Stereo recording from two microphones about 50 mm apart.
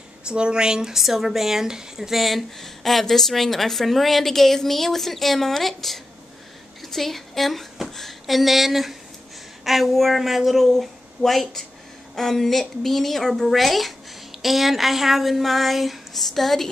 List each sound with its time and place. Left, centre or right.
0.3 s speech: centre
0.9 s speech: centre